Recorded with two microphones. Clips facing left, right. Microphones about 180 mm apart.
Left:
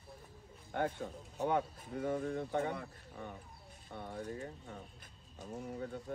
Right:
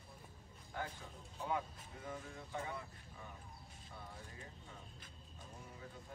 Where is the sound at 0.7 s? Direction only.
60° left (ahead or behind).